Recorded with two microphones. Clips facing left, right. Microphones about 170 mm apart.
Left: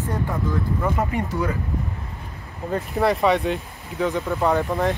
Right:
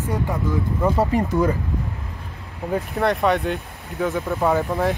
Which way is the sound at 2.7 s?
Centre (ahead or behind).